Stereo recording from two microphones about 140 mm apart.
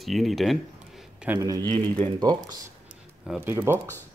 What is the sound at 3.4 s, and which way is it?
Speech, 15° right (ahead or behind).